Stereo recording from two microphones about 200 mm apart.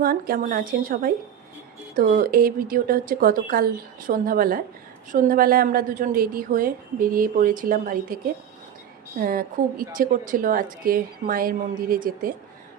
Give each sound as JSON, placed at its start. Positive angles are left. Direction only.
{"t": 0.0, "sound": "a woman's voice", "side_deg": -45}